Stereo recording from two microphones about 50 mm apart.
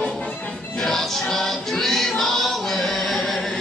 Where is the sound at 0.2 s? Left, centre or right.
Left.